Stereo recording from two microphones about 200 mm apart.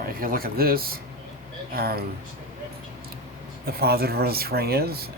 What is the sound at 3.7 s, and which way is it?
Speech, 50° right (ahead or behind).